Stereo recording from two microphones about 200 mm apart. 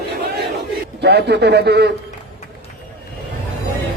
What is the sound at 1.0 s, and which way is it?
Speech, 55° right (ahead or behind).